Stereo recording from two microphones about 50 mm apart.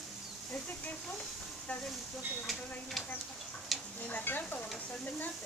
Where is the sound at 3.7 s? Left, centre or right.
Centre.